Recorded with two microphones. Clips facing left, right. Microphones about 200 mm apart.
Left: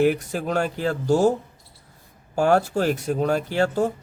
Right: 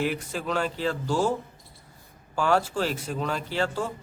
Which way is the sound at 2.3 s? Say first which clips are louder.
Left 5 dB; 45° left (ahead or behind).